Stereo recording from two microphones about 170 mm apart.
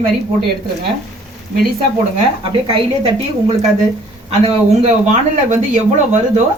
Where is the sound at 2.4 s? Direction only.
30° right (ahead or behind).